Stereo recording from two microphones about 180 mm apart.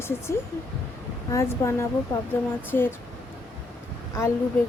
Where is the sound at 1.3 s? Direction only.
15° left (ahead or behind).